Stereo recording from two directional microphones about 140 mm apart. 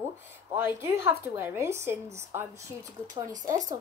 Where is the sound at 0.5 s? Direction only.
15° right (ahead or behind).